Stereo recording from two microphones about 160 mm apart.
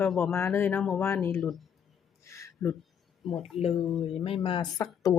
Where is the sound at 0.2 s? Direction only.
15° left (ahead or behind).